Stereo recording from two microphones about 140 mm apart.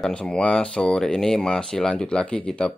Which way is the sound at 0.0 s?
5° left (ahead or behind).